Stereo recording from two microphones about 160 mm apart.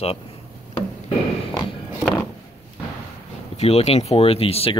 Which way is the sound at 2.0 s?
15° left (ahead or behind).